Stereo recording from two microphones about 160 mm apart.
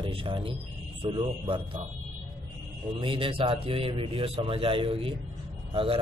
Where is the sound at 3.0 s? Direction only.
30° right (ahead or behind).